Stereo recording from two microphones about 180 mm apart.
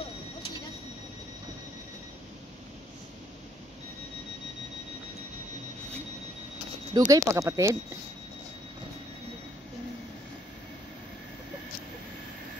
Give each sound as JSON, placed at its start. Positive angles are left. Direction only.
{"t": 6.9, "sound": "speech", "side_deg": -25}